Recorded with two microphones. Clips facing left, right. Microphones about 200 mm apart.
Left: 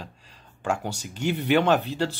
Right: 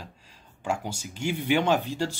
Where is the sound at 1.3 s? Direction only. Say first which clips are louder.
Left 3 dB; 55° left (ahead or behind).